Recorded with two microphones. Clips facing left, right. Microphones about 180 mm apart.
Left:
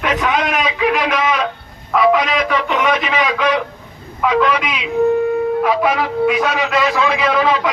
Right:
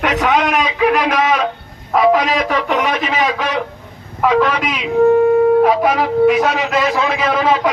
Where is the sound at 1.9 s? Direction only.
45° right (ahead or behind).